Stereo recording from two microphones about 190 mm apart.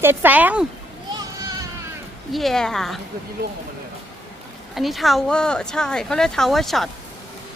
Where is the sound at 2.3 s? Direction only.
Centre (ahead or behind).